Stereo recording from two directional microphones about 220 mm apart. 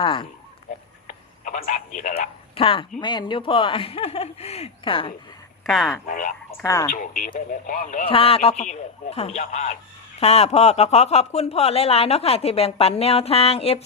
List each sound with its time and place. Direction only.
0.0 s speech: 20° left (ahead or behind)
1.0 s telephone: 35° left (ahead or behind)
2.6 s speech: 25° left (ahead or behind)
5.6 s speech: centre (ahead or behind)
6.1 s speech: 35° left (ahead or behind)
6.6 s speech: 15° left (ahead or behind)
6.9 s speech: 35° left (ahead or behind)
8.1 s speech: 25° left (ahead or behind)